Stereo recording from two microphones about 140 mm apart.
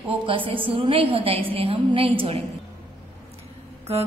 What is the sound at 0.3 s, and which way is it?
A woman's voice, 40° right (ahead or behind).